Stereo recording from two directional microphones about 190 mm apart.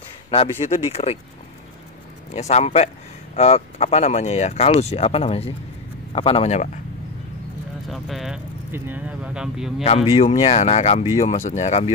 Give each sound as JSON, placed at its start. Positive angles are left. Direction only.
{"t": 0.3, "sound": "speech", "side_deg": 30}
{"t": 2.3, "sound": "speech", "side_deg": 35}
{"t": 7.9, "sound": "speech", "side_deg": 0}
{"t": 10.0, "sound": "speech", "side_deg": 30}